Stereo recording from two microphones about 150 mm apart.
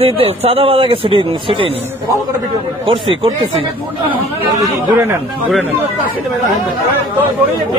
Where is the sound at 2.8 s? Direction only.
35° right (ahead or behind).